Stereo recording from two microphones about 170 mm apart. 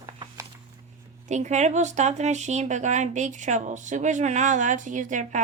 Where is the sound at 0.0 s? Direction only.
25° right (ahead or behind).